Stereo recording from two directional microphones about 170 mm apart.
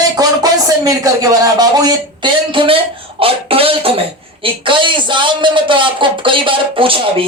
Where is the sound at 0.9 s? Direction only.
20° right (ahead or behind).